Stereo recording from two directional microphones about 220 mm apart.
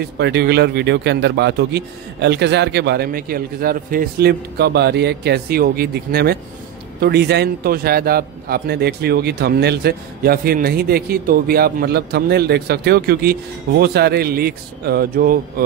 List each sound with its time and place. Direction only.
0.2 s speech: 50° right (ahead or behind)